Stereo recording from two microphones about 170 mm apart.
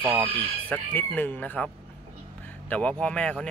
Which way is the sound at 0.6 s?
10° left (ahead or behind).